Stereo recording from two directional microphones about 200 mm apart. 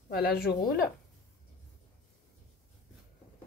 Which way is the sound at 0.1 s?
50° left (ahead or behind).